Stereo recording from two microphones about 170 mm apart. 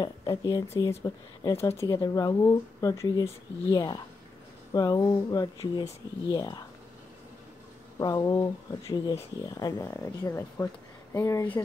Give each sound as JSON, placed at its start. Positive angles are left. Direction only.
{"t": 0.0, "sound": "speech", "side_deg": 25}
{"t": 8.0, "sound": "speech", "side_deg": 20}